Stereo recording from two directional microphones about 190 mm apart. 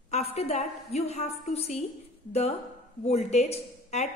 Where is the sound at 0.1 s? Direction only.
35° left (ahead or behind).